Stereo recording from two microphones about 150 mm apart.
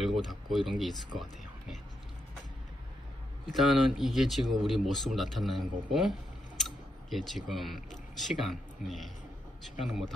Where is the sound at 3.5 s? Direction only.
Centre (ahead or behind).